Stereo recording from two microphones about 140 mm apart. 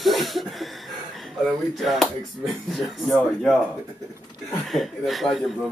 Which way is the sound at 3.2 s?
5° left (ahead or behind).